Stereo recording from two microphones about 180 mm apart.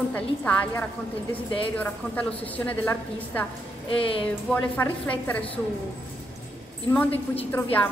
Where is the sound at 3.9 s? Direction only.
30° left (ahead or behind).